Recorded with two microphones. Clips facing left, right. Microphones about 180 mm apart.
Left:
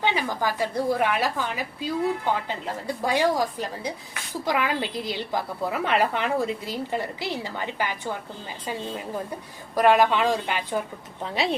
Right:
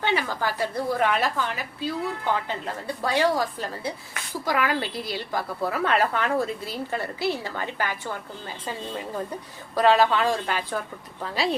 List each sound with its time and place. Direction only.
0.0 s a woman's voice: 15° left (ahead or behind)
9.7 s a woman's voice: 15° left (ahead or behind)